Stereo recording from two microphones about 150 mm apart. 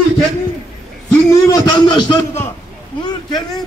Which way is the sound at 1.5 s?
25° left (ahead or behind).